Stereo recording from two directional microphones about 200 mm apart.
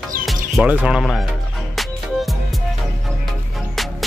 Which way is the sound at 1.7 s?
Centre (ahead or behind).